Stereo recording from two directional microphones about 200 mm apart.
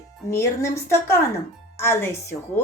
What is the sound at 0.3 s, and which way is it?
Speech, 15° left (ahead or behind).